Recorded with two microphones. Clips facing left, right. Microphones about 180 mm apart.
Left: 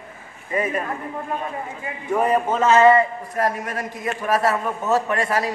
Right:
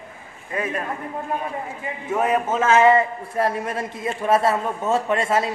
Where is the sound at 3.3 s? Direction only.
30° right (ahead or behind).